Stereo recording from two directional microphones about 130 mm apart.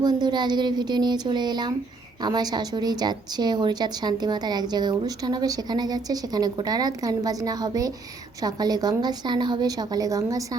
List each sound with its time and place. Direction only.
0.0 s a woman's voice: 30° right (ahead or behind)